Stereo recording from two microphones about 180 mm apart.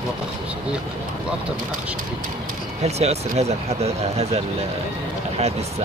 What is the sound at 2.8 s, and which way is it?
Speech, 35° right (ahead or behind).